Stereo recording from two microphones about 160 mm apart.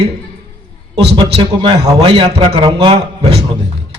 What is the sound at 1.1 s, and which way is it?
A man's voice, 35° right (ahead or behind).